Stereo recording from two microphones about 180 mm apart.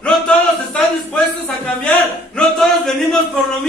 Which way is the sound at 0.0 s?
5° left (ahead or behind).